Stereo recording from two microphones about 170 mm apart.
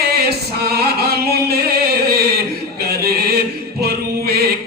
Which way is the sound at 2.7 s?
65° right (ahead or behind).